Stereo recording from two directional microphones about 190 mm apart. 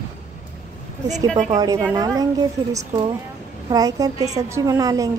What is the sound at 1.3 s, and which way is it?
Speech, 40° right (ahead or behind).